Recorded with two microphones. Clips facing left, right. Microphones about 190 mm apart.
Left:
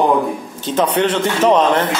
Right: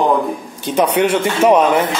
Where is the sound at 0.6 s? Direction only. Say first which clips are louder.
Right 2 dB; 10° right (ahead or behind).